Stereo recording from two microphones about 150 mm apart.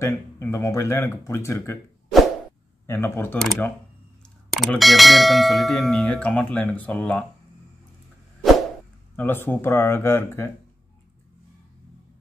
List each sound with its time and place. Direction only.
0.0 s speech: 20° left (ahead or behind)
2.9 s speech: 15° left (ahead or behind)
3.3 s bell: 5° left (ahead or behind)
9.1 s speech: 15° left (ahead or behind)